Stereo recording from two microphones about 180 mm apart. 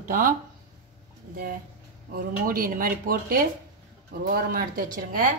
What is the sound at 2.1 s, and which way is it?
Speech, 55° right (ahead or behind).